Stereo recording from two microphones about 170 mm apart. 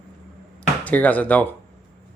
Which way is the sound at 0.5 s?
10° left (ahead or behind).